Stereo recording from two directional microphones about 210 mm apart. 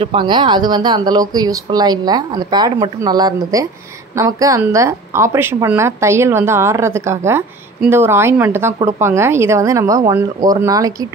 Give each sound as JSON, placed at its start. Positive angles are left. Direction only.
{"t": 0.0, "sound": "a woman's voice", "side_deg": -25}